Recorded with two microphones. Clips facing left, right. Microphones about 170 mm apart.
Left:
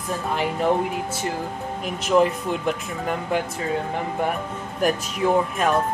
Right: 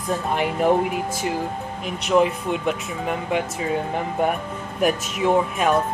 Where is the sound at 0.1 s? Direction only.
20° right (ahead or behind).